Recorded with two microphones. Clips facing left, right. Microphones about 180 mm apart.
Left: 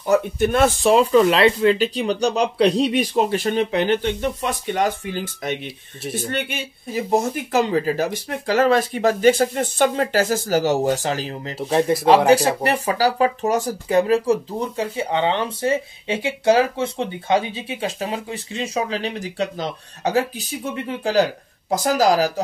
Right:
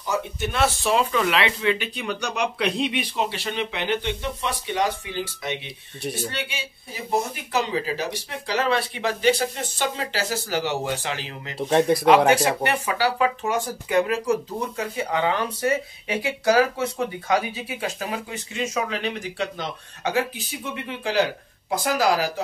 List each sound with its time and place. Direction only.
0.0 s speech: 55° left (ahead or behind); by 11.5 s 40° left (ahead or behind)
11.5 s speech: centre (ahead or behind)
12.6 s speech: 35° left (ahead or behind)